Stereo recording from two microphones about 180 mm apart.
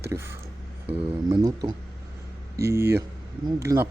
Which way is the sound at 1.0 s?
30° right (ahead or behind).